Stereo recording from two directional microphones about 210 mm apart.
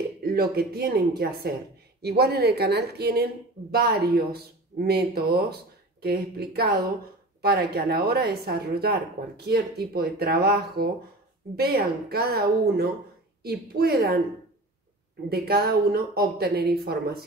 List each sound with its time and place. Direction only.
0.2 s speech: 45° right (ahead or behind)
15.2 s speech: 50° right (ahead or behind)